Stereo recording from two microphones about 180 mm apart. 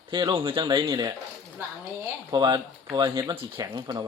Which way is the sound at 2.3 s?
25° right (ahead or behind).